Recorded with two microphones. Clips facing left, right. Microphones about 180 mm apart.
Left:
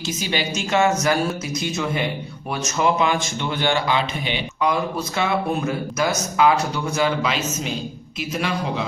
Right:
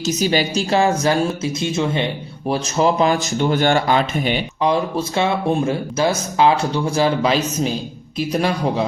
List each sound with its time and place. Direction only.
0.0 s speech: 40° right (ahead or behind)
4.6 s speech: 30° right (ahead or behind)